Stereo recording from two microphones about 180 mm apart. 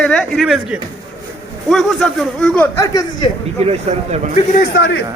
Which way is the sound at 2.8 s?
20° left (ahead or behind).